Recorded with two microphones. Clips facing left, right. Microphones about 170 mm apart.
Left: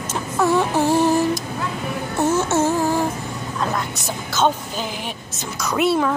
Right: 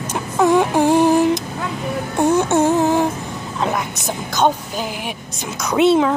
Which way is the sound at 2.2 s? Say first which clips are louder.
Right 3 dB; 15° right (ahead or behind).